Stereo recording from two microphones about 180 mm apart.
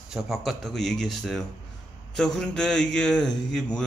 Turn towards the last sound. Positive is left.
turn(degrees=5)  # may be behind; listen again after turning